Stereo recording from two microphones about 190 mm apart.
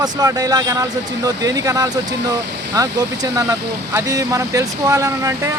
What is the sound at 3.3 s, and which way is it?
Speech, 15° right (ahead or behind).